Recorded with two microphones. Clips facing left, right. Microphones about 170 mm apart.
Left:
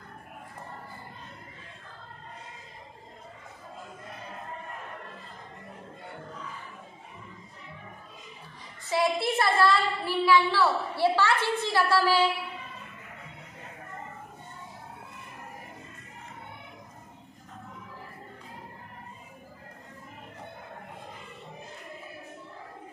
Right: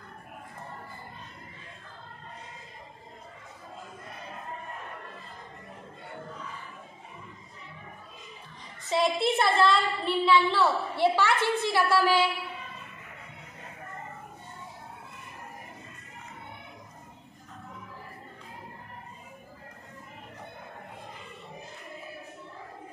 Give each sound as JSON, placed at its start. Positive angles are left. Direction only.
{"t": 8.9, "sound": "a woman's voice", "side_deg": -20}